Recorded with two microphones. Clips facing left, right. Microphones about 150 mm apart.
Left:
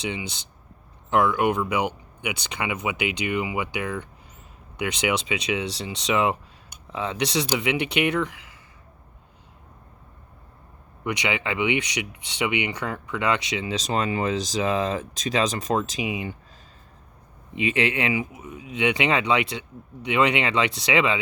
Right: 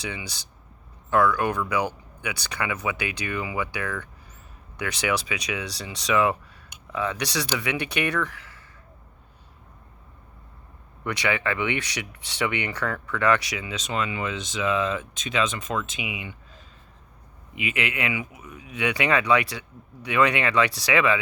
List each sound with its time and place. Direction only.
0.0 s speech: 20° left (ahead or behind)
11.0 s speech: 20° left (ahead or behind); by 16.3 s 35° left (ahead or behind)
17.5 s speech: 30° left (ahead or behind)